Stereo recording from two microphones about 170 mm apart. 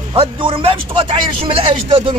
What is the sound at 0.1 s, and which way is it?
A man's voice, 30° right (ahead or behind).